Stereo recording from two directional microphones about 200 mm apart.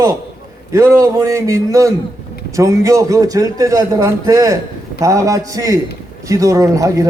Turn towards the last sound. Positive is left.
turn(degrees=-15)  # may be behind; listen again after turning